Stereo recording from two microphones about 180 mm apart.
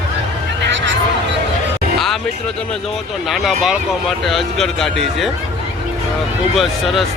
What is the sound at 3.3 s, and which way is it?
Speech, centre (ahead or behind).